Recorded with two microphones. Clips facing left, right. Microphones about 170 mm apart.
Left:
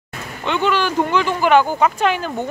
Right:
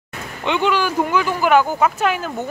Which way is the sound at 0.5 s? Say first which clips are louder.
Even; 15° right (ahead or behind).